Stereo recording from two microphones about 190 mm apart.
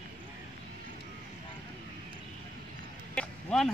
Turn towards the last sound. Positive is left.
turn(degrees=5)  # may be behind; listen again after turning